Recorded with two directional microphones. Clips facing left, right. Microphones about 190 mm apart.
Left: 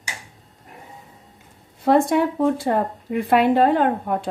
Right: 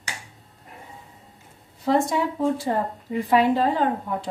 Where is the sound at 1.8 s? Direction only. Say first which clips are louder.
Left 5 dB; 60° left (ahead or behind).